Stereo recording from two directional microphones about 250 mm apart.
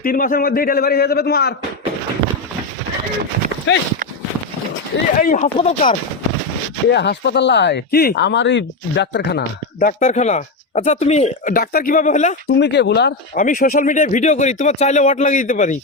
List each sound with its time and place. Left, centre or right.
0.0 s speech: left
3.7 s speech: left
5.1 s speech: left
6.9 s speech: left
9.8 s speech: left
12.5 s speech: left